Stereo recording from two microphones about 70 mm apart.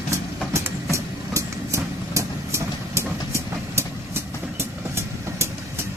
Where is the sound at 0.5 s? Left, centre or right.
Right.